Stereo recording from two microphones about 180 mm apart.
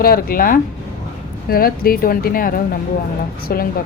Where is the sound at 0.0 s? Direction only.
55° left (ahead or behind).